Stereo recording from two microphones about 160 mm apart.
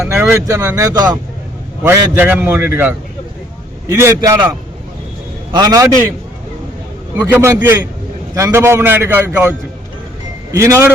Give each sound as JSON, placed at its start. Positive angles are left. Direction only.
{"t": 0.0, "sound": "a man's voice", "side_deg": -15}
{"t": 5.5, "sound": "speech", "side_deg": -25}
{"t": 7.2, "sound": "a man's voice", "side_deg": -10}